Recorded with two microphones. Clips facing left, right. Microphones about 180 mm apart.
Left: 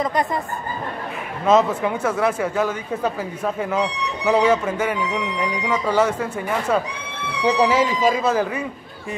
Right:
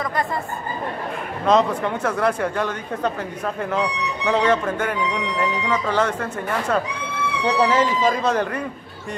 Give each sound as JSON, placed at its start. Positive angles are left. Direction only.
{"t": 0.0, "sound": "speech", "side_deg": 20}
{"t": 1.4, "sound": "speech", "side_deg": 5}